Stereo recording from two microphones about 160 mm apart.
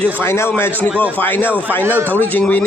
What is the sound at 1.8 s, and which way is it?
Speech, 15° right (ahead or behind).